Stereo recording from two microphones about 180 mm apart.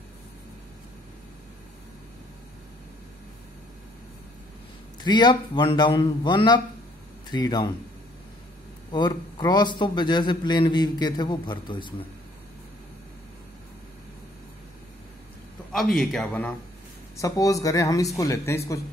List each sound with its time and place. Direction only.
5.0 s a man's voice: 25° left (ahead or behind)
8.9 s a man's voice: 25° left (ahead or behind)
15.7 s speech: centre (ahead or behind)
17.2 s speech: 20° left (ahead or behind)